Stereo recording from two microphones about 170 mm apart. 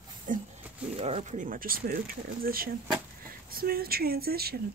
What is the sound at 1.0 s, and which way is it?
Speech, 40° right (ahead or behind).